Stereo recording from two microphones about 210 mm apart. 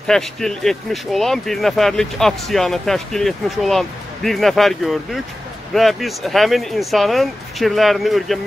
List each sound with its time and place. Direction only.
0.0 s speech: centre (ahead or behind)